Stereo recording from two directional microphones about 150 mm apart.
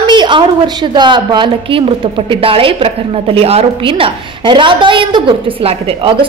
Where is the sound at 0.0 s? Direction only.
30° right (ahead or behind).